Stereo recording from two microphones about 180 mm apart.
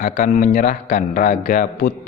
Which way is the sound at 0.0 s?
45° left (ahead or behind).